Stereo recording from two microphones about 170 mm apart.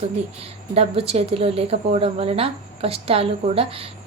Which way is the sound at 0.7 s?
35° right (ahead or behind).